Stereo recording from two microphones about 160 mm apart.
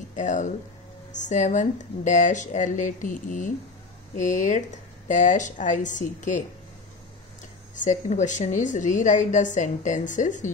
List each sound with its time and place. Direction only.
0.1 s a woman's voice: 50° left (ahead or behind)
7.7 s a woman's voice: 50° left (ahead or behind)